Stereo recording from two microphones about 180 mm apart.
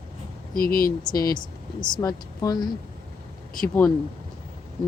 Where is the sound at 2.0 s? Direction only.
20° left (ahead or behind).